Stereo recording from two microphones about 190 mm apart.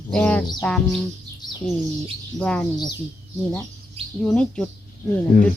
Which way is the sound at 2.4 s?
5° left (ahead or behind).